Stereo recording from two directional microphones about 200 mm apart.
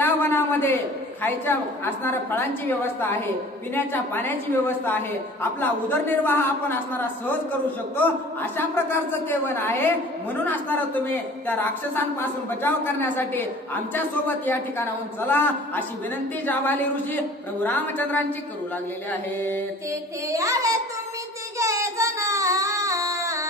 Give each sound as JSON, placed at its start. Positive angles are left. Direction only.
{"t": 0.0, "sound": "a sound", "side_deg": 10}
{"t": 1.2, "sound": "a woman's voice", "side_deg": 10}
{"t": 8.0, "sound": "a woman's voice", "side_deg": 10}
{"t": 11.1, "sound": "a woman's voice", "side_deg": 10}
{"t": 19.9, "sound": "a child's voice", "side_deg": -15}
{"t": 21.5, "sound": "child singing", "side_deg": -15}